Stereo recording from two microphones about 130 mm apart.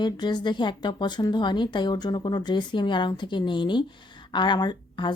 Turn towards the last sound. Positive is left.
turn(degrees=35)  # may be behind; listen again after turning